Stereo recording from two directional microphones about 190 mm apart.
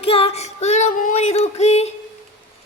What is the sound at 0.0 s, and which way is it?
Female singing, 30° left (ahead or behind).